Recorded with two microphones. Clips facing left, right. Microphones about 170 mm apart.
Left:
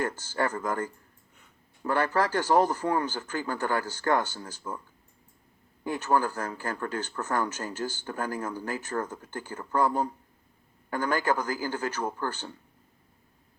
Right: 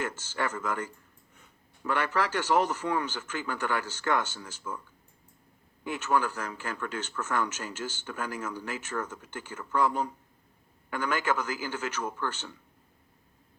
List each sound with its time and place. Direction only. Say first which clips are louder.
0.3 s speech: left 3 dB; 35° left (ahead or behind)
5.8 s speech: left 2 dB; 35° left (ahead or behind)
10.8 s speech: left 3 dB; 40° left (ahead or behind)